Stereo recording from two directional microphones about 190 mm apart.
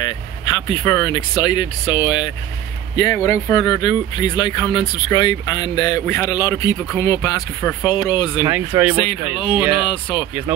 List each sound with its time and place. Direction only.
0.0 s speech: 20° left (ahead or behind)
8.5 s speech: 10° right (ahead or behind)
9.8 s speech: 25° left (ahead or behind)